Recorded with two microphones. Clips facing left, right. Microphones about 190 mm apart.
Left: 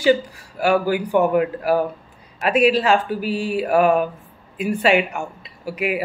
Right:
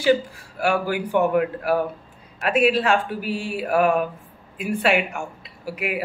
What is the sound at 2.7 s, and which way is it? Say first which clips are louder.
Speech: left 3 dB; 35° left (ahead or behind).